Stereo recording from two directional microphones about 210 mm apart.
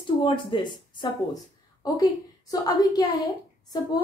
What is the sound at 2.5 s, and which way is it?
Speech, 15° left (ahead or behind).